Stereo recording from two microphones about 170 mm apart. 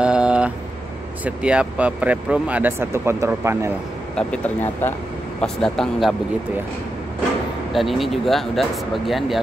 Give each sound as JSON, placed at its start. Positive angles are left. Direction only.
{"t": 0.0, "sound": "vehicle", "side_deg": -5}
{"t": 1.2, "sound": "speech", "side_deg": -5}
{"t": 4.1, "sound": "speech", "side_deg": 5}
{"t": 5.4, "sound": "speech", "side_deg": 5}
{"t": 7.7, "sound": "speech", "side_deg": 0}